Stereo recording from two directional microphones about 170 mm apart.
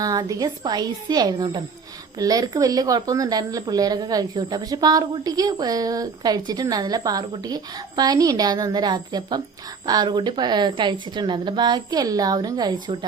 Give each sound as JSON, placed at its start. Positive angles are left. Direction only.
{"t": 0.0, "sound": "speech", "side_deg": -20}